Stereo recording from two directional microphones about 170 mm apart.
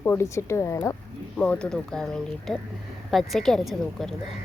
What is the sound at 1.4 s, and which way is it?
Speech, 5° left (ahead or behind).